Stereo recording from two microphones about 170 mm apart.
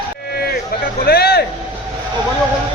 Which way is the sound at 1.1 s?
70° left (ahead or behind).